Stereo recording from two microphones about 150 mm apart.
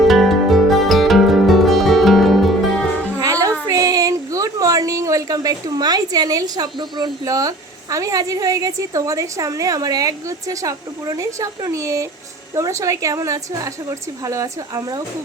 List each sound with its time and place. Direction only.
0.1 s music: centre (ahead or behind)
3.2 s music: 25° right (ahead or behind)
3.7 s a woman's voice: 25° right (ahead or behind)